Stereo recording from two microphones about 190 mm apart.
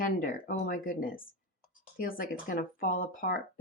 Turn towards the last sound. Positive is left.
turn(degrees=45)  # may be behind; listen again after turning